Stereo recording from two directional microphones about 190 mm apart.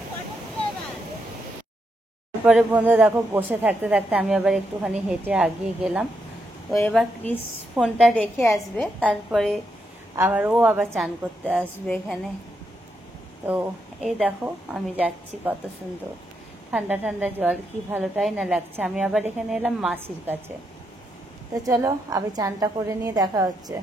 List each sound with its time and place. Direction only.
2.4 s a woman's voice: 5° right (ahead or behind)
11.6 s a woman's voice: 5° left (ahead or behind)
13.5 s speech: 5° right (ahead or behind)
16.7 s a woman's voice: 5° right (ahead or behind)
21.6 s a woman's voice: 20° right (ahead or behind)